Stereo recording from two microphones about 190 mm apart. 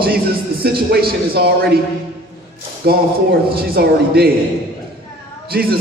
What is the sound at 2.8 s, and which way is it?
A man's voice, 55° right (ahead or behind).